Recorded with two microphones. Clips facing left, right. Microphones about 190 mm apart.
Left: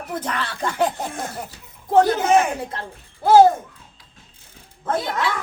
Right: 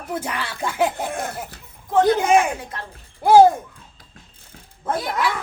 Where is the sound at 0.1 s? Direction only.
10° right (ahead or behind).